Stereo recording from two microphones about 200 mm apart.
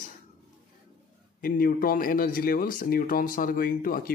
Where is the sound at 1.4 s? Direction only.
45° left (ahead or behind).